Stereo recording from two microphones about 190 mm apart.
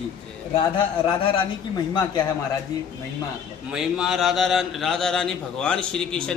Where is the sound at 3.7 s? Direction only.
5° right (ahead or behind).